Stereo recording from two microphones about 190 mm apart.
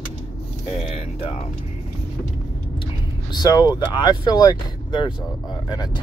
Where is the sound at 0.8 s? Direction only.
30° left (ahead or behind).